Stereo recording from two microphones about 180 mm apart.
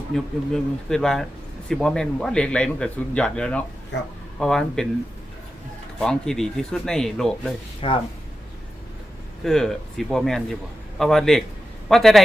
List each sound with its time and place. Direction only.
0.1 s a man's voice: 5° left (ahead or behind)
6.0 s a man's voice: 5° left (ahead or behind)
7.8 s speech: 30° left (ahead or behind)
9.4 s a man's voice: centre (ahead or behind)